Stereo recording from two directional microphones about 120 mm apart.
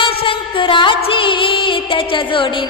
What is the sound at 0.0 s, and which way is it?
Music, 45° left (ahead or behind).